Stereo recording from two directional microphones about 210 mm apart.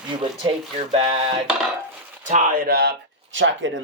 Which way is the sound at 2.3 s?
40° right (ahead or behind).